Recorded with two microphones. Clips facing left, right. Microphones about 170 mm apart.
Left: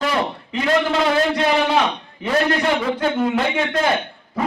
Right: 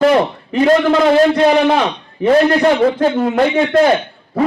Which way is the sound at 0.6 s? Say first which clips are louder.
Right 8 dB; 45° right (ahead or behind).